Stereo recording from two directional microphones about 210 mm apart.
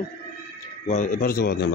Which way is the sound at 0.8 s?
35° left (ahead or behind).